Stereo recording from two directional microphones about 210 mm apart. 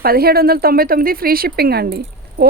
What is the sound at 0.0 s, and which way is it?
Speech, 45° right (ahead or behind).